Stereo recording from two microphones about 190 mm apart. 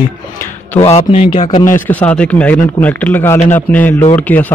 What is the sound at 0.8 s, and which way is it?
Speech, 35° left (ahead or behind).